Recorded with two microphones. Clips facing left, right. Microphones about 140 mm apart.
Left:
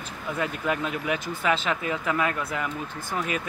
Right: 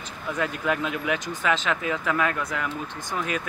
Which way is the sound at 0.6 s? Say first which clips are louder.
Right 1 dB; centre (ahead or behind).